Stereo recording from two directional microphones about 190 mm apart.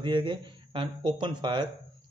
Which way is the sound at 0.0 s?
25° right (ahead or behind).